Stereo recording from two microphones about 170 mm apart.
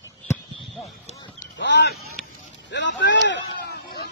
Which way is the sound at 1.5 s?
90° left.